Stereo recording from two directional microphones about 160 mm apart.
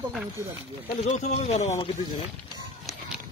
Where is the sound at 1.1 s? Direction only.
45° left (ahead or behind).